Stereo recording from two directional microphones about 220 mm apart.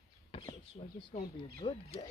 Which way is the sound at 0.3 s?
25° left (ahead or behind).